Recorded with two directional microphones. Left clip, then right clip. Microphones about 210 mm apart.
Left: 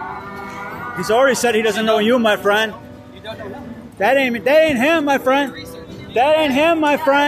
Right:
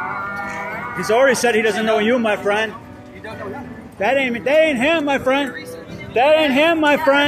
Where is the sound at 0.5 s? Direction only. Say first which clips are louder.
Right 2 dB; 50° left (ahead or behind).